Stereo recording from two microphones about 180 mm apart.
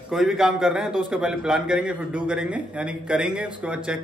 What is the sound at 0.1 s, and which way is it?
A man's voice, centre (ahead or behind).